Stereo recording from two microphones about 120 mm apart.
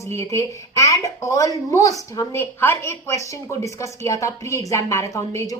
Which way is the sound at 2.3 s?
20° left (ahead or behind).